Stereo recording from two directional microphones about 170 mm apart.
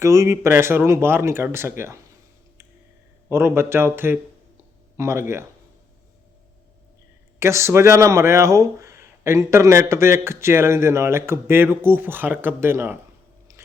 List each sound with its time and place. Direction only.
0.0 s speech: 15° right (ahead or behind)
3.2 s speech: 15° right (ahead or behind)
7.3 s speech: 15° right (ahead or behind)